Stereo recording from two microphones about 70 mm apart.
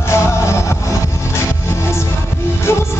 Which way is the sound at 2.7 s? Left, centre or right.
Left.